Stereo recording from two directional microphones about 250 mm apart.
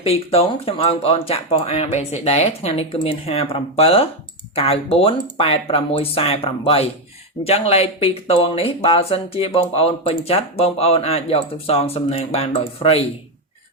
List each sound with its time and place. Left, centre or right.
0.0 s speech: left